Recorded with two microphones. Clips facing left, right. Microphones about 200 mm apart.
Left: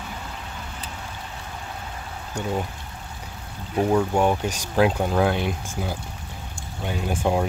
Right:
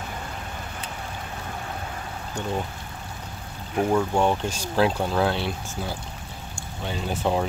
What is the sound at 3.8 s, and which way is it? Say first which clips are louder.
Speech: left 1 dB; 5° left (ahead or behind).